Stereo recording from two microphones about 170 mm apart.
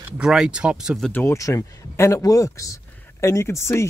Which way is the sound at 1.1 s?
15° left (ahead or behind).